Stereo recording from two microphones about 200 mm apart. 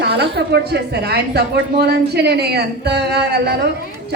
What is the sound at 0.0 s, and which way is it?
A woman's voice, 55° right (ahead or behind).